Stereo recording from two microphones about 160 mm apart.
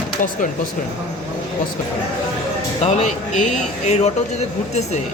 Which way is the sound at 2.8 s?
45° left (ahead or behind).